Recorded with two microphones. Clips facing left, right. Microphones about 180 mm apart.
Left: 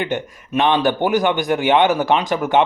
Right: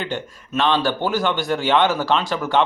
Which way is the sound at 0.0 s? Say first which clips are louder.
Left 4 dB; 15° left (ahead or behind).